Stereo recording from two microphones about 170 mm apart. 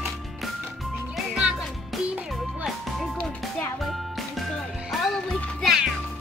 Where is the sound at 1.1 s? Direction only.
5° right (ahead or behind).